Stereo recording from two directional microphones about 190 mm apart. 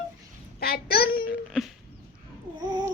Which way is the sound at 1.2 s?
5° right (ahead or behind).